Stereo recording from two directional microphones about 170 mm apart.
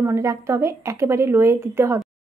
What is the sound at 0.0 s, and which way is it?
A woman's voice, 15° right (ahead or behind).